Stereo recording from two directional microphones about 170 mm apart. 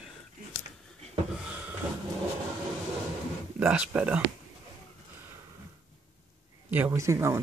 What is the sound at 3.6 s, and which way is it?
Speech, 10° right (ahead or behind).